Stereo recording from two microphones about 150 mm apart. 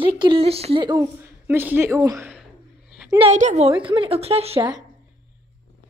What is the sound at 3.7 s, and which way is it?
Speech, 35° right (ahead or behind).